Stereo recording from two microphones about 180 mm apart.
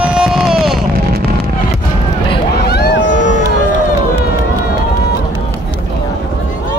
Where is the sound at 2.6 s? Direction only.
65° left (ahead or behind).